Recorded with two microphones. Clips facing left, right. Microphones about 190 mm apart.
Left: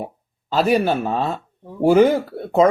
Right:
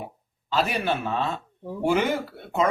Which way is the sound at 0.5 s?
40° left (ahead or behind).